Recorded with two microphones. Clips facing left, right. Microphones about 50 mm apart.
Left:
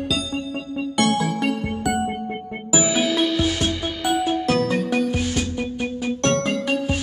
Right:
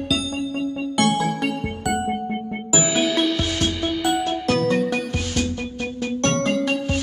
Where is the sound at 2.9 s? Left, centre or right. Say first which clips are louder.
Right 1 dB; centre.